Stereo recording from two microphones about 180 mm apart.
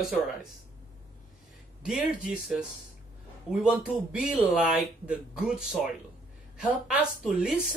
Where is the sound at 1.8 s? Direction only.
5° right (ahead or behind).